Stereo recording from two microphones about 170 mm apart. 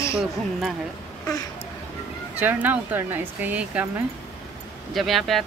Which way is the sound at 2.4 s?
10° right (ahead or behind).